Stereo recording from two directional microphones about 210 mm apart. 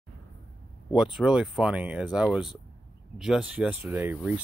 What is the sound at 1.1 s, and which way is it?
Speech, 5° right (ahead or behind).